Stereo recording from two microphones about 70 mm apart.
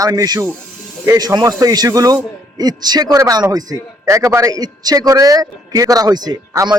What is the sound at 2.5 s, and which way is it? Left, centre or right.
A man's voice, right.